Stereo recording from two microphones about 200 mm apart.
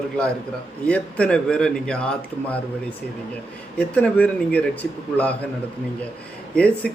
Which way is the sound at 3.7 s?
5° left (ahead or behind).